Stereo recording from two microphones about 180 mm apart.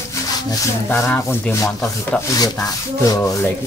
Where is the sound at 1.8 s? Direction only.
10° left (ahead or behind).